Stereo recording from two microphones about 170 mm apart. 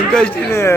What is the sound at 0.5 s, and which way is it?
Speech, 15° left (ahead or behind).